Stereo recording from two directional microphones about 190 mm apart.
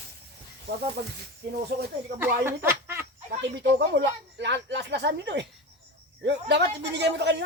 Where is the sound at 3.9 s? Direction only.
65° right (ahead or behind).